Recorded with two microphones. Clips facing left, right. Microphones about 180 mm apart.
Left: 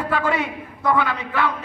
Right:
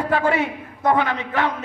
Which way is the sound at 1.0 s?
45° right (ahead or behind).